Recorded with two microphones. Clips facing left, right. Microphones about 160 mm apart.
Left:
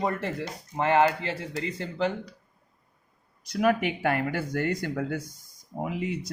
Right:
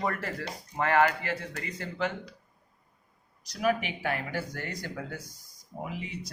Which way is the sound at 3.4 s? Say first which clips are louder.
Left 4 dB; 55° left (ahead or behind).